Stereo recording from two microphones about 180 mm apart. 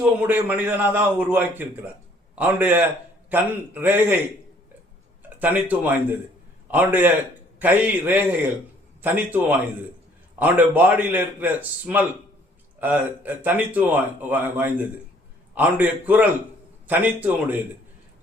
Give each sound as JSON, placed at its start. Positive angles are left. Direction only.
{"t": 0.0, "sound": "speech", "side_deg": -10}
{"t": 5.4, "sound": "speech", "side_deg": -10}